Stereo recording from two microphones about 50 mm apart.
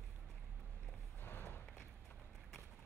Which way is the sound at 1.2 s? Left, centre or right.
Left.